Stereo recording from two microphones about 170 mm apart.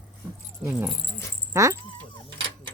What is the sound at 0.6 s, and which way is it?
Speech, 10° right (ahead or behind).